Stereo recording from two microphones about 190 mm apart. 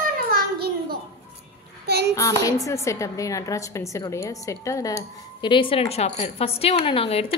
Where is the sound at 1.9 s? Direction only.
60° right (ahead or behind).